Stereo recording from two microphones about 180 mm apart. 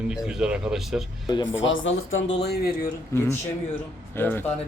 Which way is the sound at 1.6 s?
90° left.